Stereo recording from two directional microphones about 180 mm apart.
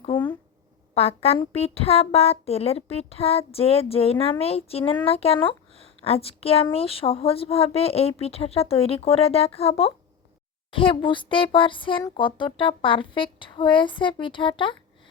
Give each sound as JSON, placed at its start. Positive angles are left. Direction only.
{"t": 0.0, "sound": "a woman's voice", "side_deg": 30}